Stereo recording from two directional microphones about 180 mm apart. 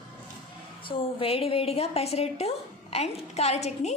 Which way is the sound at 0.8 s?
30° left (ahead or behind).